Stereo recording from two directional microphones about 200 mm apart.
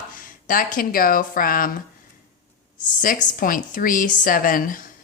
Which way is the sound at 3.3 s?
45° left (ahead or behind).